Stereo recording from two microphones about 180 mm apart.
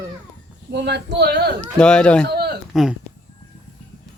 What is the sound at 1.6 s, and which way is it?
Speech, 5° left (ahead or behind).